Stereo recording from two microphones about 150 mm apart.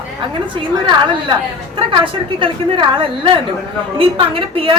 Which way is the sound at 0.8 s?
30° right (ahead or behind).